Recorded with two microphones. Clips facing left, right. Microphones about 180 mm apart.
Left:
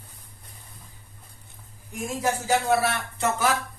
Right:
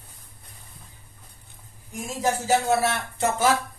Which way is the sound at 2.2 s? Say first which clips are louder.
Right 2 dB; 20° right (ahead or behind).